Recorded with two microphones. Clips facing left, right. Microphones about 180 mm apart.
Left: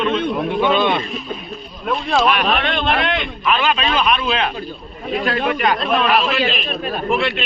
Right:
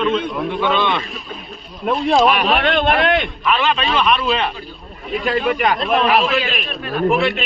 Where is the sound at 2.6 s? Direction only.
50° right (ahead or behind).